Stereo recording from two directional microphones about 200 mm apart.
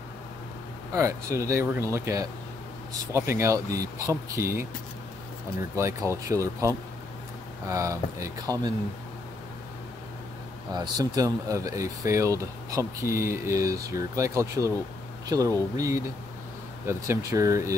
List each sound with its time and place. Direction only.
0.9 s speech: 15° right (ahead or behind)
5.8 s speech: 15° right (ahead or behind)
10.7 s speech: 20° right (ahead or behind)